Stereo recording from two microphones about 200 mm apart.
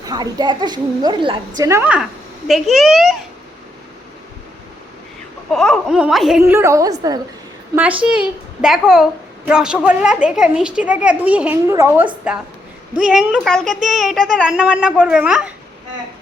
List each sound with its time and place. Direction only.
0.0 s a woman's voice: 20° right (ahead or behind); by 3.2 s centre (ahead or behind)
5.5 s a woman's voice: centre (ahead or behind)
6.4 s a woman's voice: 15° right (ahead or behind)
8.0 s a woman's voice: 5° right (ahead or behind)